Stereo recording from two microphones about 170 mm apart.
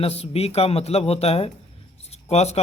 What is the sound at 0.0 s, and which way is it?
A man's voice, 35° left (ahead or behind).